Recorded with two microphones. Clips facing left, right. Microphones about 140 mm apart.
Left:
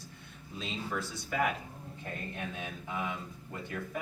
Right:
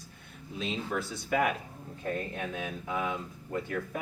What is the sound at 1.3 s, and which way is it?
Speech, 60° right (ahead or behind).